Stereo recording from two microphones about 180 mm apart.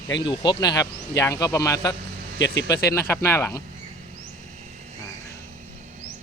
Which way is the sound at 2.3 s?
80° left.